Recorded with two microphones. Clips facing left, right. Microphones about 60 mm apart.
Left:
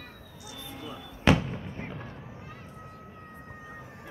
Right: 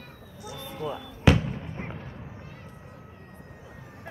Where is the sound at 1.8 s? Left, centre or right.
Right.